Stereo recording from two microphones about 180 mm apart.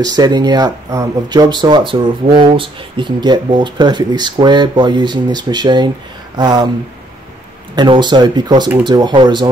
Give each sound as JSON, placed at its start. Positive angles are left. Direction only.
{"t": 0.0, "sound": "speech", "side_deg": -20}
{"t": 7.7, "sound": "speech", "side_deg": -25}